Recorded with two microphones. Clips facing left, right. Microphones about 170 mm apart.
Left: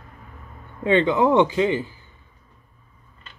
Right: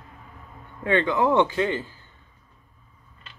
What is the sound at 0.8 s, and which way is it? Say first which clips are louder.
Speech: left 4 dB; 20° left (ahead or behind).